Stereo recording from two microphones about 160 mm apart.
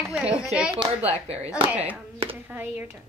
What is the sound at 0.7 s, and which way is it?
Speech, 40° right (ahead or behind).